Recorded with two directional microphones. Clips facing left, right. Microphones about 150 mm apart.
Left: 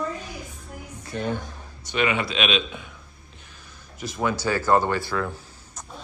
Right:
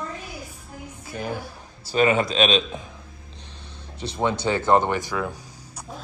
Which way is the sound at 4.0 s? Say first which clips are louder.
Right 1 dB; 25° right (ahead or behind).